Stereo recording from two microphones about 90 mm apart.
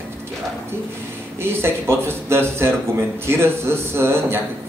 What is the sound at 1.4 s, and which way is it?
Speech, 25° right (ahead or behind).